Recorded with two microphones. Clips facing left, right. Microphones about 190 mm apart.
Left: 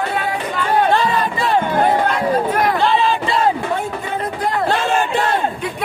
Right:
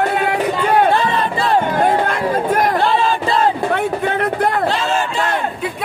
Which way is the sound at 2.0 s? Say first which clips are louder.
Even; 50° right (ahead or behind).